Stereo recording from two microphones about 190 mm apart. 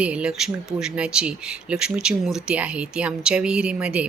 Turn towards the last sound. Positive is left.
turn(degrees=-5)  # may be behind; listen again after turning